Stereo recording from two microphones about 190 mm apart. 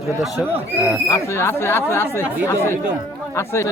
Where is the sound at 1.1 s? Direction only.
15° left (ahead or behind).